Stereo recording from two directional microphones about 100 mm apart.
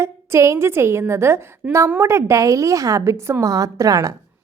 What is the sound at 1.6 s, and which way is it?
Speech, 15° right (ahead or behind).